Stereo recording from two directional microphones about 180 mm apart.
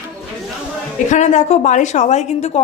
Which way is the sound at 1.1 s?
40° left (ahead or behind).